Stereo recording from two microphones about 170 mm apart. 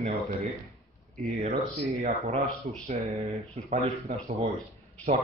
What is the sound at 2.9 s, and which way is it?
Speech, 40° right (ahead or behind).